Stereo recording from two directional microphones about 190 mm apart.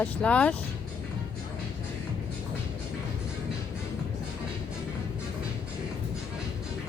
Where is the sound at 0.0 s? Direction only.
5° left (ahead or behind).